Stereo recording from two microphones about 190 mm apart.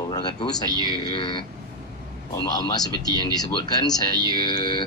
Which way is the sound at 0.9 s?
25° left (ahead or behind).